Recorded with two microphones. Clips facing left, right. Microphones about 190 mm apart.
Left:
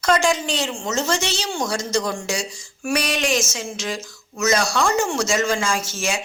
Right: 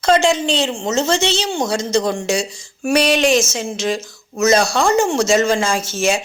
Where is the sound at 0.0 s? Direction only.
25° right (ahead or behind).